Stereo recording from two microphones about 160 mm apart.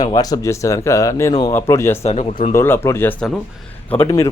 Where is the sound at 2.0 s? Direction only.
45° left (ahead or behind).